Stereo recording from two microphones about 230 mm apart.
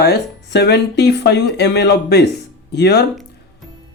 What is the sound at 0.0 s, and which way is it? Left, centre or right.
Speech, left.